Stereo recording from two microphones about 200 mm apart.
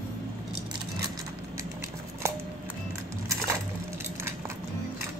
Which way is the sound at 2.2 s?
15° right (ahead or behind).